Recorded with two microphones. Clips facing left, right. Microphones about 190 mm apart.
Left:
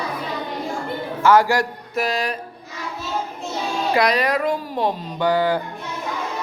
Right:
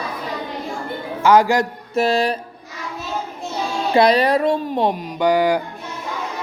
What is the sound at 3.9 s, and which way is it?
Speech, 30° right (ahead or behind).